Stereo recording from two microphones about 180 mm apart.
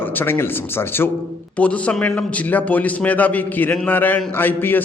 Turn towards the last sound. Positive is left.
turn(degrees=10)  # may be behind; listen again after turning